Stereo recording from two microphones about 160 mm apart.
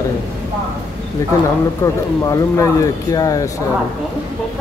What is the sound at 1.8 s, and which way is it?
Speech, 20° left (ahead or behind).